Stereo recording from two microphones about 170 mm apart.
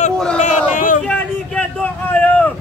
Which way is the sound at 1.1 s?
10° left (ahead or behind).